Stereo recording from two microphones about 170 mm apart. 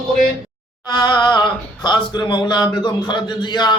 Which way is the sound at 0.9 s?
25° left (ahead or behind).